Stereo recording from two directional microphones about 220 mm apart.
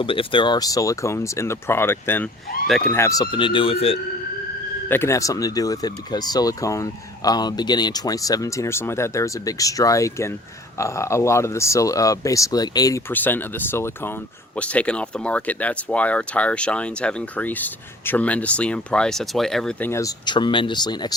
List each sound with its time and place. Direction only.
0.0 s speech: 25° left (ahead or behind); by 2.9 s centre (ahead or behind)
2.9 s speech: 15° left (ahead or behind)
4.9 s speech: 10° left (ahead or behind)